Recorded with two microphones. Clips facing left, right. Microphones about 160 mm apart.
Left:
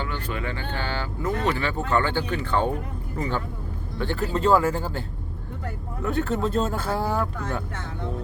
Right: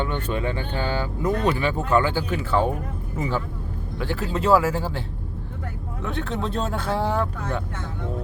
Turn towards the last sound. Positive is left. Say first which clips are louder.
# right 1 dB
turn(degrees=5)  # may be behind; listen again after turning